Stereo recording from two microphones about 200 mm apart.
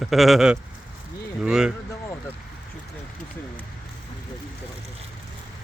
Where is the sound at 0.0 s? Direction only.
Centre (ahead or behind).